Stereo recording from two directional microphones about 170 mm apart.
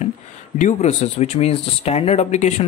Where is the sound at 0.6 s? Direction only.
45° left (ahead or behind).